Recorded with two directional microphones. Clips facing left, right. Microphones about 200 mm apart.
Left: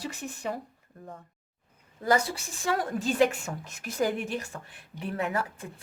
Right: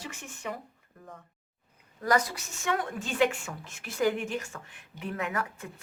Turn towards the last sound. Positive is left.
turn(degrees=30)  # may be behind; listen again after turning